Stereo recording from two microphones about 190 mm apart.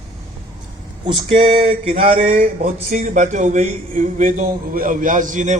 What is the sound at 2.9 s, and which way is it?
A man's voice, 40° right (ahead or behind).